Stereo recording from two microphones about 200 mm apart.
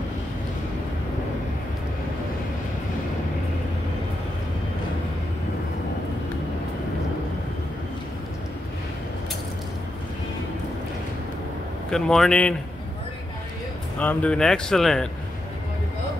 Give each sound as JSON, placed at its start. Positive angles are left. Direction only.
{"t": 11.9, "sound": "speech", "side_deg": 5}
{"t": 13.9, "sound": "speech", "side_deg": 5}